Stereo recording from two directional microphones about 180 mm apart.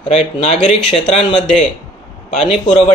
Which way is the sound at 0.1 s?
40° left (ahead or behind).